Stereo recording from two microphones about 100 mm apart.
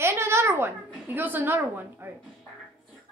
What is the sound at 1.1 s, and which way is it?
A woman's voice, 20° right (ahead or behind).